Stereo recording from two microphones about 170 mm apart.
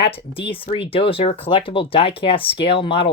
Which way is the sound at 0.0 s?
30° left (ahead or behind).